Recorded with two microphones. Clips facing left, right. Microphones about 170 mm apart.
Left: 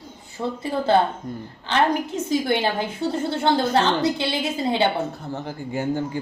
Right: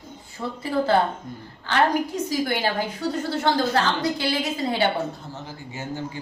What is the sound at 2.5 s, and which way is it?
A woman's voice, 25° left (ahead or behind).